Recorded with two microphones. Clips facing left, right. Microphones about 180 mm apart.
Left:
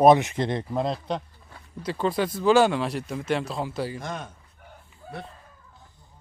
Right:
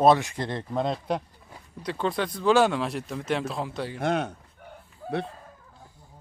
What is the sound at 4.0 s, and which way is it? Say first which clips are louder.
Speech: right 8 dB; 70° right (ahead or behind).